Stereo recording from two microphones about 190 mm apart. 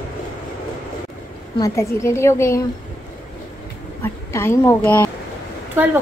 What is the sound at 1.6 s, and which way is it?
A woman's voice, 15° left (ahead or behind).